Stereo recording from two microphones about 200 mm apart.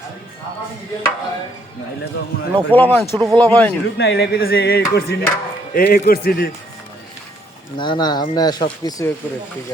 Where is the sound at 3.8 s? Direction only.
60° left (ahead or behind).